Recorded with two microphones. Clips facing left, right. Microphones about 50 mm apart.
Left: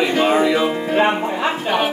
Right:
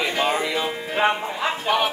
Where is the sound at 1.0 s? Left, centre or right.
Left.